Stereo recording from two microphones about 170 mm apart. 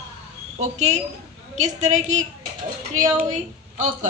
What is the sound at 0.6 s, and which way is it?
A woman's voice, 40° right (ahead or behind).